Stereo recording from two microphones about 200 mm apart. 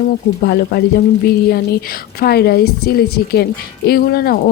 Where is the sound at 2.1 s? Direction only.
50° left (ahead or behind).